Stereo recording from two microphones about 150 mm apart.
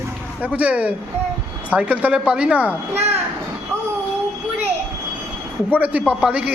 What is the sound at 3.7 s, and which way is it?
Train, 20° right (ahead or behind).